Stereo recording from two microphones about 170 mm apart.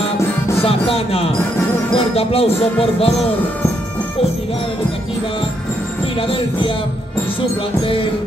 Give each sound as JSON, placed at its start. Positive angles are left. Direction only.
{"t": 0.6, "sound": "speech", "side_deg": 35}
{"t": 6.2, "sound": "speech", "side_deg": 30}
{"t": 7.8, "sound": "speech", "side_deg": 30}